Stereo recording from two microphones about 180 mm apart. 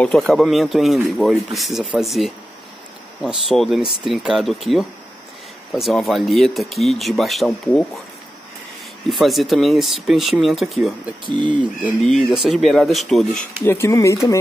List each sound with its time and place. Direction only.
0.0 s speech: centre (ahead or behind)
9.1 s speech: centre (ahead or behind)
11.2 s speech: 25° right (ahead or behind)
11.8 s speech: centre (ahead or behind)
13.7 s speech: 15° left (ahead or behind)